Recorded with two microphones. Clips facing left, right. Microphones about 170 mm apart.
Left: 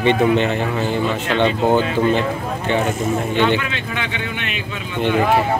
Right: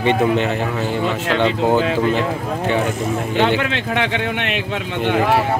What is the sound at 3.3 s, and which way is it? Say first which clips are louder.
Speech: right 3 dB; 70° right (ahead or behind).